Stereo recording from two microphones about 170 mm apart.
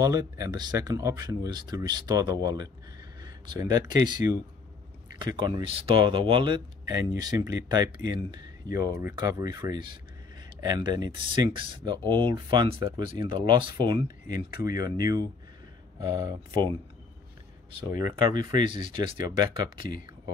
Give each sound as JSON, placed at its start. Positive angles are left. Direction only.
{"t": 0.0, "sound": "speech", "side_deg": -20}
{"t": 17.7, "sound": "speech", "side_deg": -25}